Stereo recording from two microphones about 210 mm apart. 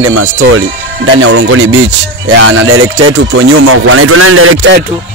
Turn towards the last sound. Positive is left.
turn(degrees=-80)